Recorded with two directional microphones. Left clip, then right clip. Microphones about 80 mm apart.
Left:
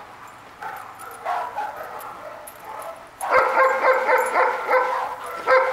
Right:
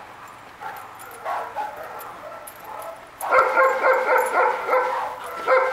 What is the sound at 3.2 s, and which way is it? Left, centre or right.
Dog, left.